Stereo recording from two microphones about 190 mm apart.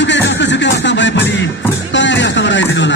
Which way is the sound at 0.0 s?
70° left (ahead or behind).